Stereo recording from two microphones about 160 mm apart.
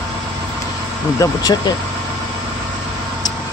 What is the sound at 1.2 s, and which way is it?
Speech, 25° left (ahead or behind).